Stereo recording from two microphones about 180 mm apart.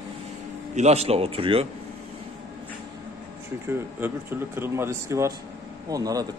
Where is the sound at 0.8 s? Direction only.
35° right (ahead or behind).